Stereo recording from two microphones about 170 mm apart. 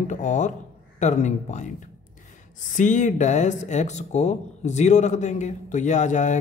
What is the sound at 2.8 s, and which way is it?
A man's voice, 45° left (ahead or behind).